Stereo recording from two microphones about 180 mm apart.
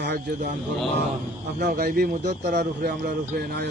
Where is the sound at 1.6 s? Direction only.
60° right (ahead or behind).